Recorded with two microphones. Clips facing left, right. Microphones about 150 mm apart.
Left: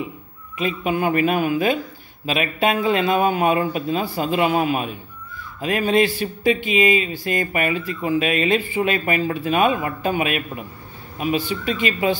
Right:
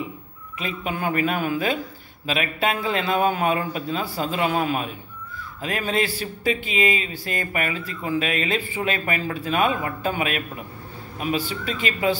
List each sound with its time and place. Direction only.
0.6 s speech: 20° left (ahead or behind)